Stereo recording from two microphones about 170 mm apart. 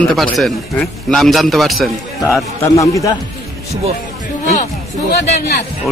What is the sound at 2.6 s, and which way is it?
Speech, 20° left (ahead or behind).